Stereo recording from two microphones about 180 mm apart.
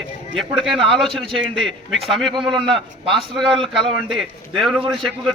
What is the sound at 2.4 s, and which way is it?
A man's voice, 25° right (ahead or behind).